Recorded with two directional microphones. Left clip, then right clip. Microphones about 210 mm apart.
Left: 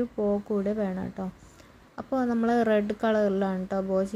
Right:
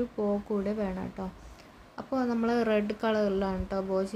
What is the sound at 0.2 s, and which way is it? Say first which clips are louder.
A woman's voice: left 4 dB; 10° left (ahead or behind).